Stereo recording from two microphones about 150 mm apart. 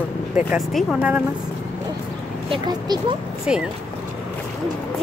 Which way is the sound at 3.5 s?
5° right (ahead or behind).